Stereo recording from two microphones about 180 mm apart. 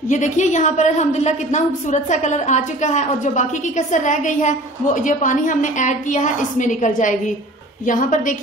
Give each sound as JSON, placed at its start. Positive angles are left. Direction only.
{"t": 0.1, "sound": "a woman's voice", "side_deg": 40}